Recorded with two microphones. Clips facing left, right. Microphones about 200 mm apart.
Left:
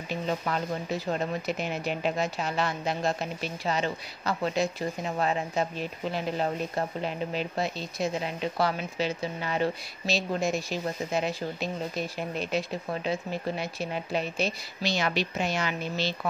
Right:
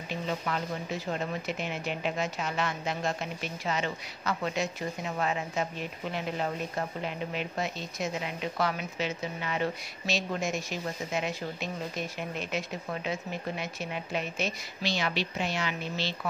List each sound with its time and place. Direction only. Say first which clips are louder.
1.6 s speech: left 3 dB; 40° left (ahead or behind)